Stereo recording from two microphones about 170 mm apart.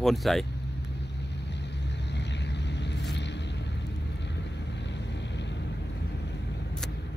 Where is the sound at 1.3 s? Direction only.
90° left.